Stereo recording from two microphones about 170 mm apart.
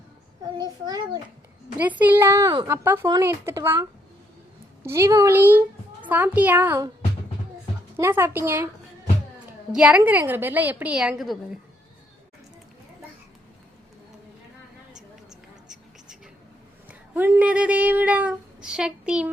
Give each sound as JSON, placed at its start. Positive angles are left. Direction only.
{"t": 0.6, "sound": "a child's voice", "side_deg": -25}
{"t": 1.8, "sound": "a child's voice", "side_deg": -10}
{"t": 4.8, "sound": "a child's voice", "side_deg": -15}
{"t": 7.9, "sound": "a child's voice", "side_deg": -15}
{"t": 9.7, "sound": "a child's voice", "side_deg": -5}
{"t": 15.3, "sound": "a sound", "side_deg": -5}
{"t": 16.9, "sound": "speech", "side_deg": -10}